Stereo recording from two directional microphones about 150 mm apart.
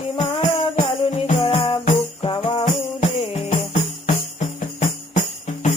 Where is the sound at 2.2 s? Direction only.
30° left (ahead or behind).